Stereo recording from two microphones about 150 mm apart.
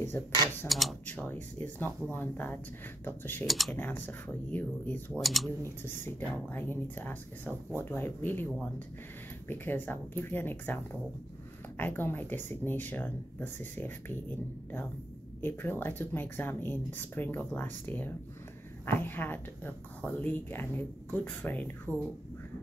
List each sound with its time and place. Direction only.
0.7 s speech: centre (ahead or behind)
1.0 s speech: 10° left (ahead or behind)
3.4 s speech: centre (ahead or behind)
3.7 s speech: 15° left (ahead or behind)
5.2 s speech: centre (ahead or behind)
5.6 s speech: 15° left (ahead or behind)
15.4 s speech: 15° left (ahead or behind)